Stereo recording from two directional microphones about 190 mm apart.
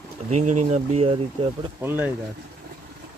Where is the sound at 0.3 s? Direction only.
40° right (ahead or behind).